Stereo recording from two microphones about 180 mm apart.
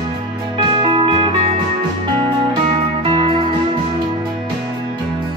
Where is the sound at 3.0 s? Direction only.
30° right (ahead or behind).